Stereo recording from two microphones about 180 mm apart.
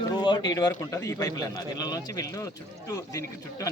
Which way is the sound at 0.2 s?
25° left (ahead or behind).